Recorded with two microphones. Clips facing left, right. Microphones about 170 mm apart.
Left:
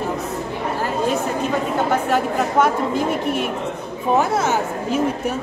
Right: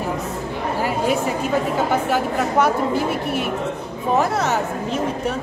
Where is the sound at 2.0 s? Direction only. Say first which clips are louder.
Left 1 dB; 5° right (ahead or behind).